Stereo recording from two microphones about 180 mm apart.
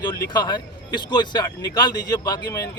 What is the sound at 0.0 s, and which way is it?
Speech, 20° left (ahead or behind).